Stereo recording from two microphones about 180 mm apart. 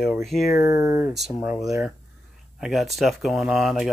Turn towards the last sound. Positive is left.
turn(degrees=0)  # may be behind; listen again after turning